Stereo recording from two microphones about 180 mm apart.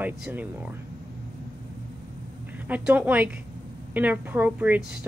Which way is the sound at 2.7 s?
10° right (ahead or behind).